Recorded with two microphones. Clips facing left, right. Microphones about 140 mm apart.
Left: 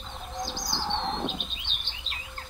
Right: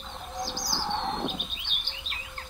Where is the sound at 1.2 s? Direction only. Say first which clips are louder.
Even; 15° right (ahead or behind).